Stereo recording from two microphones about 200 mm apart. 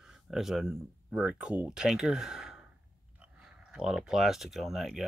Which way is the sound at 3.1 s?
5° right (ahead or behind).